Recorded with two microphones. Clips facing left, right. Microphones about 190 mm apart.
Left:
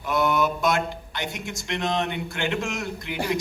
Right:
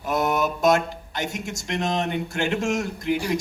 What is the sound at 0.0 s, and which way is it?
A man's voice, 45° right (ahead or behind).